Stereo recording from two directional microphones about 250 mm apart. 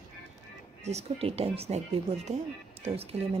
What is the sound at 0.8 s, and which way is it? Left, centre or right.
Speech, right.